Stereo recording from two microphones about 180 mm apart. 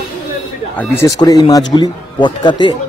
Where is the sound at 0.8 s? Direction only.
15° left (ahead or behind).